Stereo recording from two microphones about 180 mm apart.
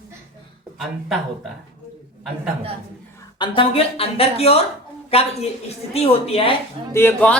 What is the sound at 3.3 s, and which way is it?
A woman's voice, 25° left (ahead or behind).